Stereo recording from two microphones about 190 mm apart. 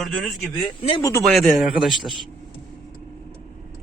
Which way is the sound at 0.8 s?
30° left (ahead or behind).